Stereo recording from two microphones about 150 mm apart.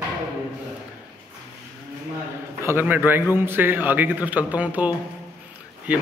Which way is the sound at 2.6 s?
15° right (ahead or behind).